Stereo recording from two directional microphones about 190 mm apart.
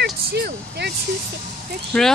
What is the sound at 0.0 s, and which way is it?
Vehicle, 55° right (ahead or behind).